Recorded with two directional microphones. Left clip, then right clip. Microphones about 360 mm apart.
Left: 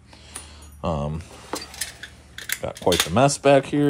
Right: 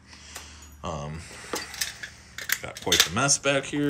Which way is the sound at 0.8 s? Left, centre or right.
Centre.